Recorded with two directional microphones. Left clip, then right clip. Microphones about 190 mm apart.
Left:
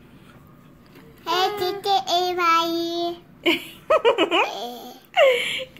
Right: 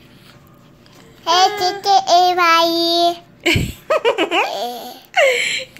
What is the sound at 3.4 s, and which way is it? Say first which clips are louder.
Giggle: right 3 dB; centre (ahead or behind).